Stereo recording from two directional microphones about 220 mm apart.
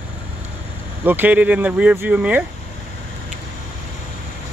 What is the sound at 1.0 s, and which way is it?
Speech, 10° right (ahead or behind).